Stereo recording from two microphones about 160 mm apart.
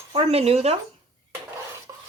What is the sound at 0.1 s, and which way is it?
Speech, 40° right (ahead or behind).